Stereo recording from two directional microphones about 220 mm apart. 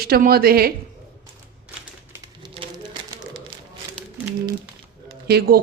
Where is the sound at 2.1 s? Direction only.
20° right (ahead or behind).